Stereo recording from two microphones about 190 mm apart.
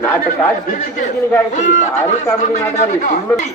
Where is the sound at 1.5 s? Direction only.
40° left (ahead or behind).